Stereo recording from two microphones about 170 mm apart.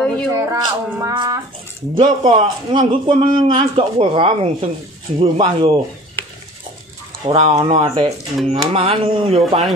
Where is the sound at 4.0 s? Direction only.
35° right (ahead or behind).